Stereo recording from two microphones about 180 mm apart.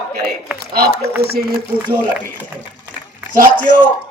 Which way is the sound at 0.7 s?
60° right (ahead or behind).